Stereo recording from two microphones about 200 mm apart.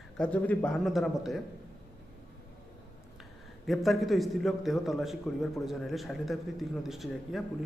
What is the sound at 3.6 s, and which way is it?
A man's voice, centre (ahead or behind).